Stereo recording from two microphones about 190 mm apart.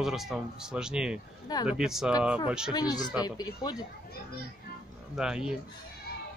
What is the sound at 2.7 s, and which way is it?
Speech, 20° left (ahead or behind).